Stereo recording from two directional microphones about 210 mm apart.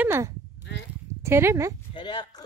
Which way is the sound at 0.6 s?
55° left (ahead or behind).